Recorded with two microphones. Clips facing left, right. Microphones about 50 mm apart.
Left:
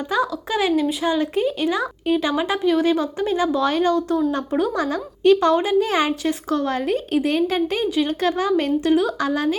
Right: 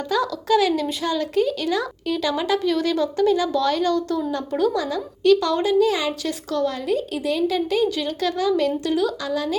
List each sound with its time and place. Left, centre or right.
0.1 s a woman's voice: left